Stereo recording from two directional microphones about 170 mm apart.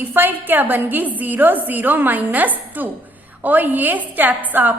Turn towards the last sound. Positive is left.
turn(degrees=-10)  # may be behind; listen again after turning